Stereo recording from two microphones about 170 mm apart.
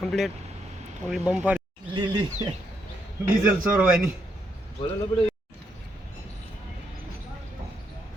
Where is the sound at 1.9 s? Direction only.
25° right (ahead or behind).